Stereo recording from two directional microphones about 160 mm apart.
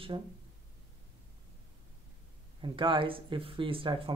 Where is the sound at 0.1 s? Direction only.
30° right (ahead or behind).